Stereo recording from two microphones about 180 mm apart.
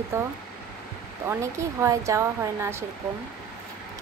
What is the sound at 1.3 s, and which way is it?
Speech, 15° right (ahead or behind).